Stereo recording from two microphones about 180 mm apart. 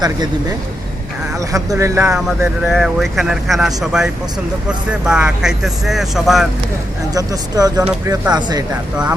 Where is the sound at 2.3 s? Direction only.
Centre (ahead or behind).